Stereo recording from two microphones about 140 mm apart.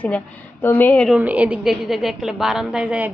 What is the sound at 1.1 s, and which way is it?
Speech, 10° right (ahead or behind).